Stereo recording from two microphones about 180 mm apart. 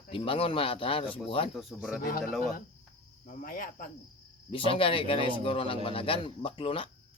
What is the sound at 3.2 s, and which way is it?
Speech, 50° left (ahead or behind).